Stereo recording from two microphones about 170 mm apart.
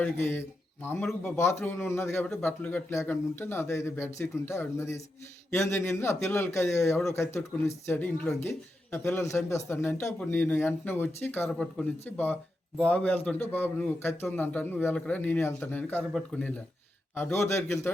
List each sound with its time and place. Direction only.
0.0 s speech: 10° left (ahead or behind)